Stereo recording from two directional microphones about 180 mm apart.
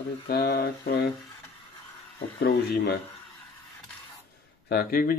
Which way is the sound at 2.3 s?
60° left (ahead or behind).